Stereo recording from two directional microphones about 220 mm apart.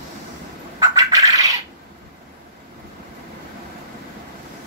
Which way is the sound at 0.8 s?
15° right (ahead or behind).